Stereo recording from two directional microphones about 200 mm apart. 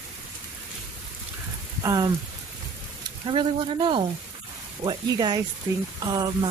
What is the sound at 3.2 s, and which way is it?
Speech, 25° right (ahead or behind).